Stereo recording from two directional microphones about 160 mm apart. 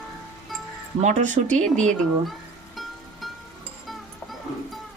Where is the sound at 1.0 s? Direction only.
50° right (ahead or behind).